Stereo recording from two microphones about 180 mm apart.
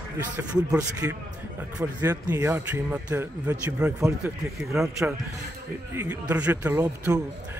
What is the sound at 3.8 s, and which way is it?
Speech, 5° right (ahead or behind).